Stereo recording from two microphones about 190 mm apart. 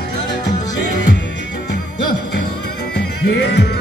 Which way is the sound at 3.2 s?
60° left (ahead or behind).